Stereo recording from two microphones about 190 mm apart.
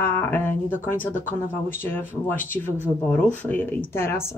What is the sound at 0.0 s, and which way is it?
Speech, 10° left (ahead or behind).